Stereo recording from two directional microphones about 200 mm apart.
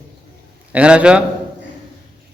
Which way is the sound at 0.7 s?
5° right (ahead or behind).